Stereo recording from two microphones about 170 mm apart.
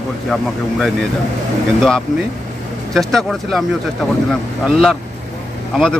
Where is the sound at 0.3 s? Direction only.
Centre (ahead or behind).